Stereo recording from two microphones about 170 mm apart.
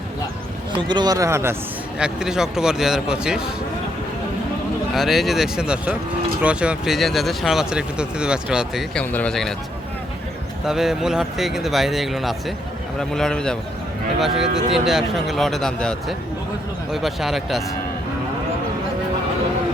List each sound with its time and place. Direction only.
0.8 s speech: 25° right (ahead or behind)
2.0 s speech: 5° right (ahead or behind)
4.9 s speech: centre (ahead or behind)
9.0 s speech: 5° left (ahead or behind)
10.7 s speech: 5° right (ahead or behind)